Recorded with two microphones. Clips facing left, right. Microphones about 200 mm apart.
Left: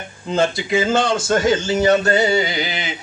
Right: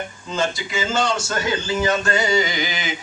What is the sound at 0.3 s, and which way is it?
Speech, 55° left (ahead or behind).